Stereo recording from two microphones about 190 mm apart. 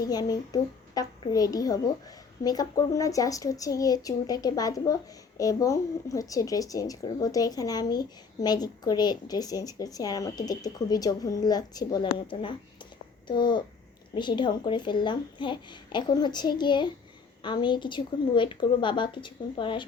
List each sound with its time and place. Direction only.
0.0 s a woman's voice: 20° left (ahead or behind)